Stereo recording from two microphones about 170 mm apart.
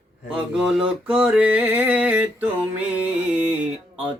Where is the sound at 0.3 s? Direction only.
5° right (ahead or behind).